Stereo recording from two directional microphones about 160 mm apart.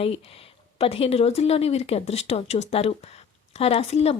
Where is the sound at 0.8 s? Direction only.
35° left (ahead or behind).